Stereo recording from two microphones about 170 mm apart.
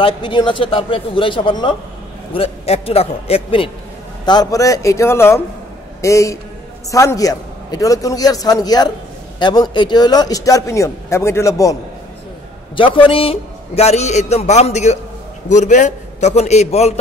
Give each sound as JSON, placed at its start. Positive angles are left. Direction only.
{"t": 0.0, "sound": "a man's voice", "side_deg": 30}
{"t": 4.3, "sound": "a man's voice", "side_deg": 20}
{"t": 12.7, "sound": "a man's voice", "side_deg": 30}